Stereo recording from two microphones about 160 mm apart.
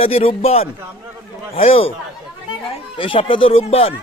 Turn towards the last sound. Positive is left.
turn(degrees=40)  # may be behind; listen again after turning